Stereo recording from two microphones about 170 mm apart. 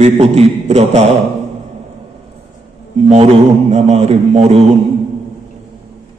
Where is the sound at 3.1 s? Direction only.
40° right (ahead or behind).